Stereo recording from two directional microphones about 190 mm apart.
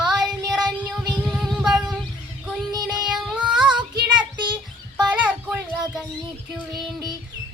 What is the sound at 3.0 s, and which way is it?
Child singing, 5° right (ahead or behind).